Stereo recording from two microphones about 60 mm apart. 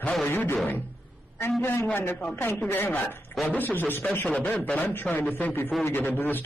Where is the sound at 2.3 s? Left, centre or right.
Left.